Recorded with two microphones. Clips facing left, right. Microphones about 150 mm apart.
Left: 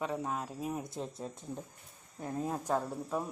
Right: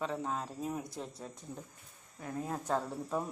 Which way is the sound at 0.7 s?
20° left (ahead or behind).